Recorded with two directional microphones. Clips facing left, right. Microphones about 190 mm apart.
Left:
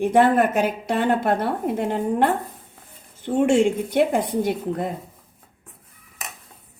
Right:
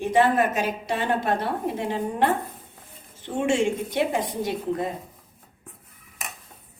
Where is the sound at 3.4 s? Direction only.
55° left (ahead or behind).